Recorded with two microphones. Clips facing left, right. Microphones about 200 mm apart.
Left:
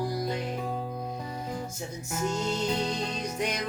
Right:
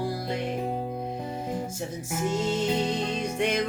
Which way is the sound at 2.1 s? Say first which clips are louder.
Right 3 dB; 25° right (ahead or behind).